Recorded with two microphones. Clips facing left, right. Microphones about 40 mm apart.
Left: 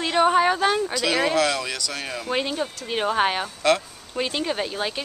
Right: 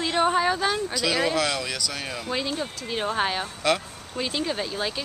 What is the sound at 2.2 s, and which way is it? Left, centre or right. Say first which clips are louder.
Speech: left 4 dB; left.